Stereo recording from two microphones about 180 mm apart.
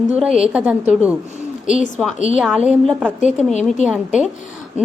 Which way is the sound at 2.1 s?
45° left (ahead or behind).